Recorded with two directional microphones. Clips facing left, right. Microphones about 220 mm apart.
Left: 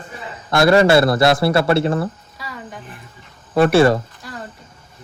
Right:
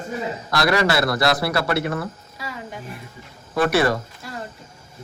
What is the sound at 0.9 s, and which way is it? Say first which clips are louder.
Speech: left 6 dB; 25° left (ahead or behind).